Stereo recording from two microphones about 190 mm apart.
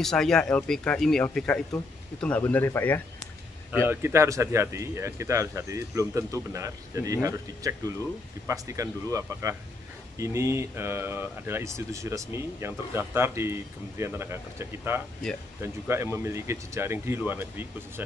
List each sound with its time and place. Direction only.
0.0 s speech: 5° left (ahead or behind)
3.8 s speech: 15° right (ahead or behind)